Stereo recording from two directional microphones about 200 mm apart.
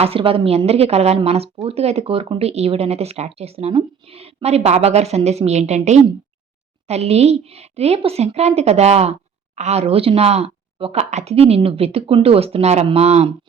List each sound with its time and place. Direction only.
0.0 s a woman's voice: 30° right (ahead or behind)